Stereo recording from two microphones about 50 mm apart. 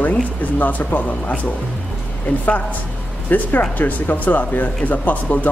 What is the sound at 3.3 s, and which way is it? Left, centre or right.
Speech, left.